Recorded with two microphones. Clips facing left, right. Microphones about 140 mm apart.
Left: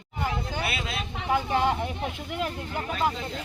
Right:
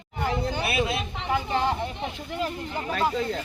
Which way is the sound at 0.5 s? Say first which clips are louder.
Right 5 dB; 20° right (ahead or behind).